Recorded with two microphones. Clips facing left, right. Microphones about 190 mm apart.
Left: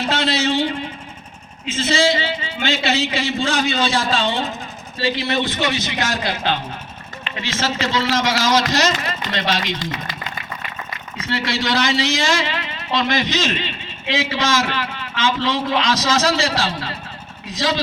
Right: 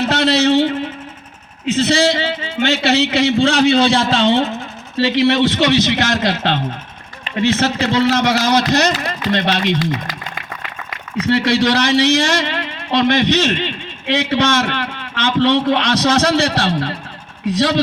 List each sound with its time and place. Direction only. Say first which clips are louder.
0.2 s a sound: right 8 dB; 65° right (ahead or behind)
1.6 s a man's voice: right 4 dB; 65° right (ahead or behind)
11.2 s a man's voice: right 9 dB; 65° right (ahead or behind)